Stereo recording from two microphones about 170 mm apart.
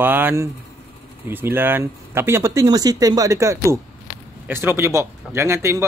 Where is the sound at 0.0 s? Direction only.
10° right (ahead or behind).